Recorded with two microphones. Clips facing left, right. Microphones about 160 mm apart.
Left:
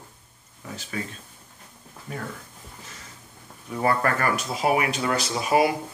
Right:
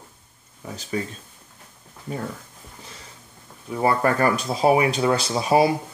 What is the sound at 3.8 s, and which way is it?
Speech, 30° right (ahead or behind).